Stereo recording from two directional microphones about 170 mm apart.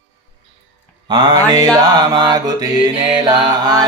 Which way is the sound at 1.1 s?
20° right (ahead or behind).